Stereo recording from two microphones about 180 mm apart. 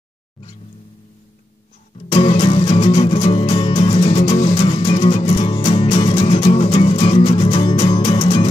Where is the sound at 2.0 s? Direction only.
35° left (ahead or behind).